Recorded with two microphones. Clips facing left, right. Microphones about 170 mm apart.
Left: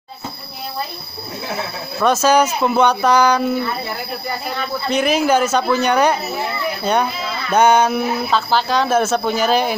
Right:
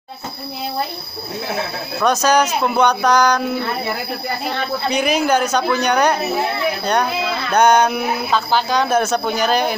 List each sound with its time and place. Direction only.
2.0 s speech: 5° left (ahead or behind)
4.8 s speech: centre (ahead or behind)